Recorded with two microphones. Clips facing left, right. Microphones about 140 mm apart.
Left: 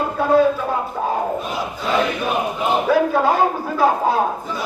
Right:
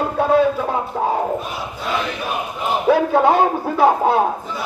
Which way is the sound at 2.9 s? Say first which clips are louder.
Right 4 dB; 25° right (ahead or behind).